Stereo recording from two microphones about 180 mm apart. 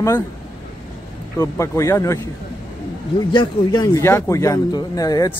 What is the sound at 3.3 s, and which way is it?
Speech, 25° left (ahead or behind).